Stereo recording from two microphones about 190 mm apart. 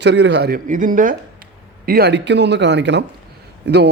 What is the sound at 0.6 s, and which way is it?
Speech, 45° right (ahead or behind).